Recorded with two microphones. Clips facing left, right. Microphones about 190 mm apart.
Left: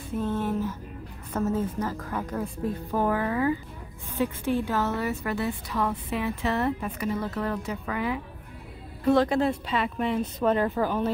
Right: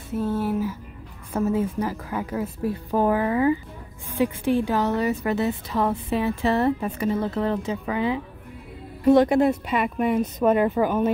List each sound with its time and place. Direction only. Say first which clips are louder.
0.1 s a sound: right 3 dB; 5° right (ahead or behind)
1.3 s a woman's voice: right 4 dB; 10° right (ahead or behind)
2.9 s a woman's voice: right 5 dB; 20° right (ahead or behind)